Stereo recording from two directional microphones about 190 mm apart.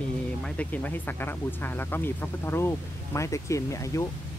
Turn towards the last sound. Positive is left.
turn(degrees=15)  # may be behind; listen again after turning